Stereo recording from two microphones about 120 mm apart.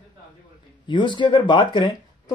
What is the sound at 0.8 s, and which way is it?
Speech, 40° left (ahead or behind).